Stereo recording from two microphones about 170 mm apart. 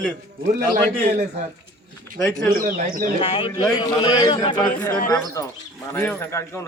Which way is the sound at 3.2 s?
35° left (ahead or behind).